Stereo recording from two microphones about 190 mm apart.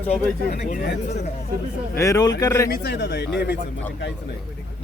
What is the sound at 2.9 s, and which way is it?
Speech, 65° left (ahead or behind).